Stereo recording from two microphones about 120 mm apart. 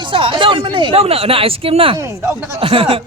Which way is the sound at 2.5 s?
50° right (ahead or behind).